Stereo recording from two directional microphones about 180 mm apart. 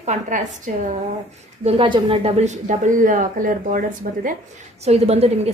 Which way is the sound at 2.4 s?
45° right (ahead or behind).